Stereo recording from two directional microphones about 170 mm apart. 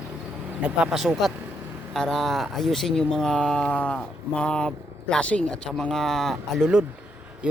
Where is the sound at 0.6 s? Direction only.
5° right (ahead or behind).